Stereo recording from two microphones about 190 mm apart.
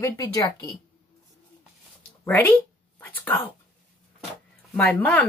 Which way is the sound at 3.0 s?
10° left (ahead or behind).